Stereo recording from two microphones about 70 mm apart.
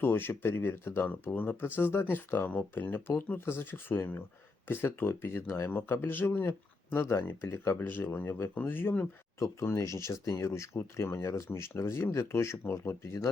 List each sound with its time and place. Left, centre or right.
0.0 s speech: left
9.4 s speech: left